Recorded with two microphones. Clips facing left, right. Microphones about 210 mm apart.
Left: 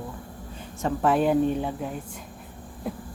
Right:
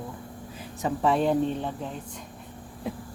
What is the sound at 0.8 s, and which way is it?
Speech, centre (ahead or behind).